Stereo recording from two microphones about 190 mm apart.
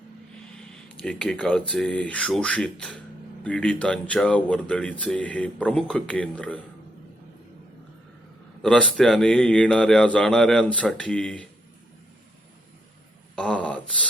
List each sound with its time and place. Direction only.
0.5 s speech: 5° left (ahead or behind)
9.0 s a man's voice: 5° left (ahead or behind)
13.3 s a sound: 5° left (ahead or behind)